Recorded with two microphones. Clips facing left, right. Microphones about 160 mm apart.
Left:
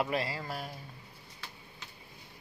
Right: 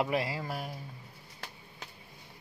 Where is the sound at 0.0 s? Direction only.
15° right (ahead or behind).